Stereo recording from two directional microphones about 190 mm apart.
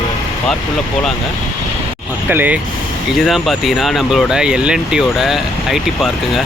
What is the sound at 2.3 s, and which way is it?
Speech, 10° right (ahead or behind).